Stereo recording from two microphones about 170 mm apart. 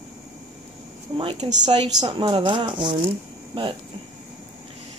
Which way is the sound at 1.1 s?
35° right (ahead or behind).